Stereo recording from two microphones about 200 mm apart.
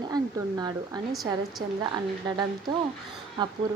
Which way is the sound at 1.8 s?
20° right (ahead or behind).